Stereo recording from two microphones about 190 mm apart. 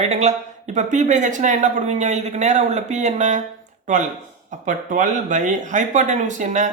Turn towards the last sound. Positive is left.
turn(degrees=-40)  # may be behind; listen again after turning